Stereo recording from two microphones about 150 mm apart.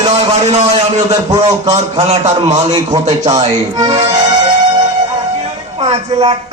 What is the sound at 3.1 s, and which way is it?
Speech, 25° right (ahead or behind).